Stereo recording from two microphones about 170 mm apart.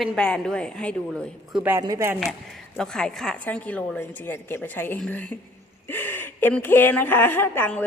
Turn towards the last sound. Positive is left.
turn(degrees=10)  # may be behind; listen again after turning